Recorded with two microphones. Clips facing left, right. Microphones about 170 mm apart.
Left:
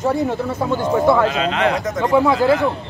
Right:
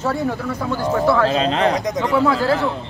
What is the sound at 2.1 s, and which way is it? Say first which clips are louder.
Speech: left 3 dB; 20° left (ahead or behind).